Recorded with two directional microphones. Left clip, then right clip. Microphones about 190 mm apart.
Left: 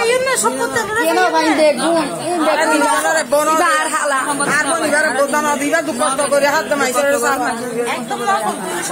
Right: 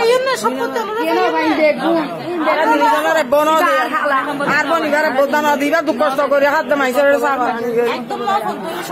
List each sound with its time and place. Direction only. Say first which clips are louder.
1.1 s speech: even; centre (ahead or behind)
3.1 s speech: right 1 dB; 25° right (ahead or behind)
3.5 s speech: right 1 dB; 45° left (ahead or behind)
4.5 s speech: right 2 dB; 35° right (ahead or behind)
6.3 s a man's voice: even; 55° right (ahead or behind)